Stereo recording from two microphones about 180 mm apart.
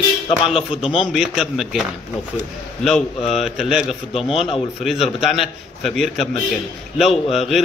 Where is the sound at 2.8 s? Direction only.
Centre (ahead or behind).